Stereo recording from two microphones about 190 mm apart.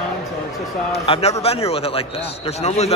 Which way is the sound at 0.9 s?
35° left (ahead or behind).